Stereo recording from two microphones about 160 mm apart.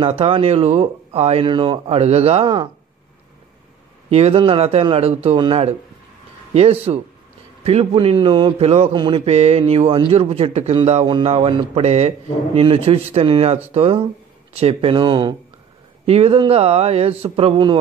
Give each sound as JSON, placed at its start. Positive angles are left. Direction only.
{"t": 0.0, "sound": "a man's voice", "side_deg": -35}
{"t": 4.1, "sound": "a man's voice", "side_deg": -40}